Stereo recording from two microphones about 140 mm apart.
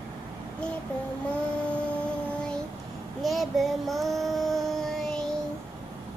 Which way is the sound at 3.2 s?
Centre (ahead or behind).